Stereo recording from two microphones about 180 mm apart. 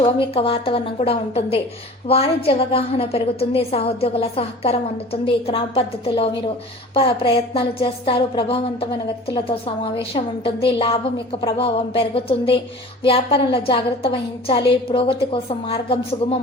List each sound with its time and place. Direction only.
0.0 s a woman's voice: 30° left (ahead or behind)